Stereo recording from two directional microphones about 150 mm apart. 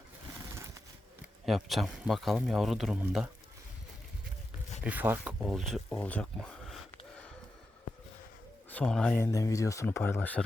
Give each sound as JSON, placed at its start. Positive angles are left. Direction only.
{"t": 1.5, "sound": "speech", "side_deg": 0}
{"t": 4.8, "sound": "speech", "side_deg": -10}
{"t": 5.9, "sound": "speech", "side_deg": 10}
{"t": 8.7, "sound": "speech", "side_deg": 5}
{"t": 9.1, "sound": "speech", "side_deg": 20}